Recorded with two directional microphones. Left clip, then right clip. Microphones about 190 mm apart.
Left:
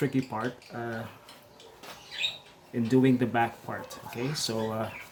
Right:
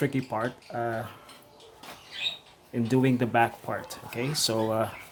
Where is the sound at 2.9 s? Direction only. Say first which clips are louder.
Even; 25° right (ahead or behind).